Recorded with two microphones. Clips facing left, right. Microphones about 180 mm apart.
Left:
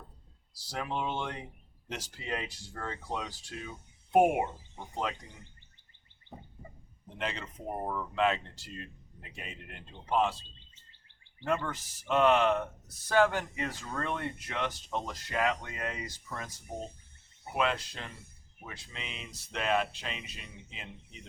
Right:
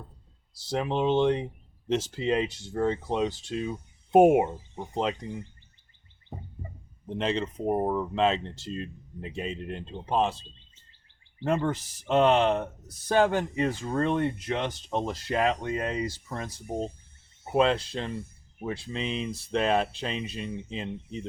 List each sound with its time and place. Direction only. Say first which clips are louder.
0.6 s speech: right 8 dB; 25° right (ahead or behind)
7.2 s speech: right 9 dB; 30° right (ahead or behind)
11.3 s speech: right 6 dB; 30° right (ahead or behind)